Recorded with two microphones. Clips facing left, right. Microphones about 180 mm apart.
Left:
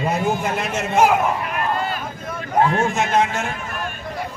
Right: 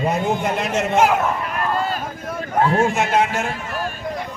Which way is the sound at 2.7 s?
35° right (ahead or behind).